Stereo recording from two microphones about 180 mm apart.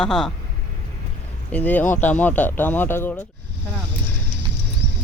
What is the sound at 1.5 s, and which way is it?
Speech, 10° left (ahead or behind).